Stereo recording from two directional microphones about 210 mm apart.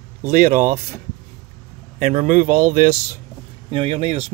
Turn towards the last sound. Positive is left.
turn(degrees=-30)  # may be behind; listen again after turning